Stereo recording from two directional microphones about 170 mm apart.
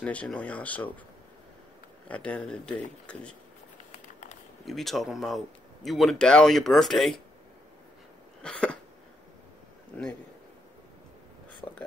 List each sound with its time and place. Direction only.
0.0 s speech: 5° left (ahead or behind)
2.0 s speech: 5° left (ahead or behind)
3.9 s a sound: 45° left (ahead or behind)
4.6 s speech: centre (ahead or behind)
8.4 s cough: 5° left (ahead or behind)
9.9 s speech: 10° left (ahead or behind)
11.6 s a sound: centre (ahead or behind)